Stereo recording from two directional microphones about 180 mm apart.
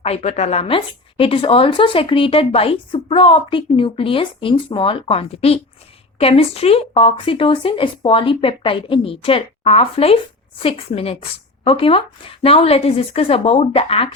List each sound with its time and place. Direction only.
0.0 s a woman's voice: 35° left (ahead or behind)